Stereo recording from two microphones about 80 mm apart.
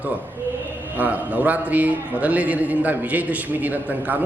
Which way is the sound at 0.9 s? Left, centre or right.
Centre.